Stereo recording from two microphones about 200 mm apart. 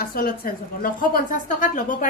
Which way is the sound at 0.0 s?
50° left (ahead or behind).